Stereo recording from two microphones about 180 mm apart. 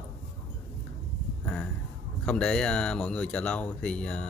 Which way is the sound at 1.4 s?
5° left (ahead or behind).